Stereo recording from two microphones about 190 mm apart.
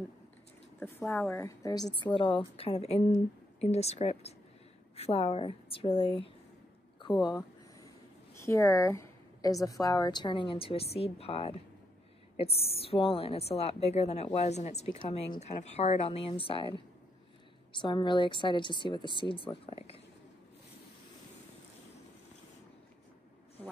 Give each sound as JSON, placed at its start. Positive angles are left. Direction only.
{"t": 0.7, "sound": "a woman's voice", "side_deg": 10}
{"t": 17.7, "sound": "a woman's voice", "side_deg": 25}